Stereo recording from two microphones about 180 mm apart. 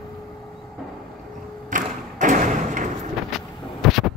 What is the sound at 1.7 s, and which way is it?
Thump, 45° right (ahead or behind).